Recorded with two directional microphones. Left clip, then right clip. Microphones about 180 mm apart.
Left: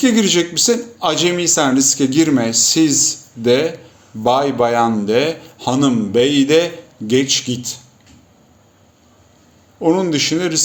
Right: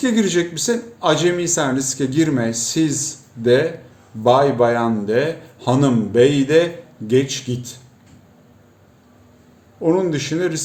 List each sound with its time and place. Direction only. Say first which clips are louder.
0.0 s a man's voice: left 4 dB; 15° right (ahead or behind)
9.8 s a man's voice: left 3 dB; 20° right (ahead or behind)